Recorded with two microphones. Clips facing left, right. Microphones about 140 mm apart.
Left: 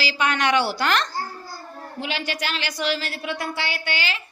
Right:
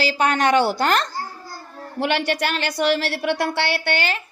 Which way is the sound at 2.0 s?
60° right (ahead or behind).